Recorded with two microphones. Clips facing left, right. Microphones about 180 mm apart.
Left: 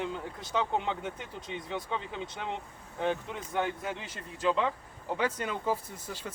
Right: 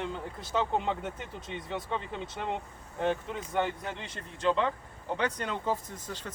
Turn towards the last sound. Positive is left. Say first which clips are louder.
# even
turn(degrees=10)  # may be behind; listen again after turning